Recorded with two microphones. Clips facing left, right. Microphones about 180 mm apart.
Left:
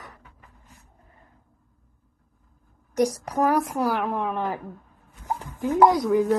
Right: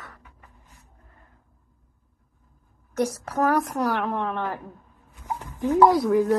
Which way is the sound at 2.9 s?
15° left (ahead or behind).